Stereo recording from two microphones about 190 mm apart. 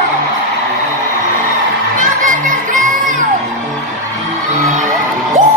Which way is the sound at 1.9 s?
45° right (ahead or behind).